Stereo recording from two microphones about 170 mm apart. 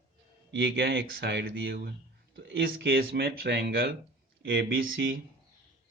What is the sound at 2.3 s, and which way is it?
Speech, 90° right.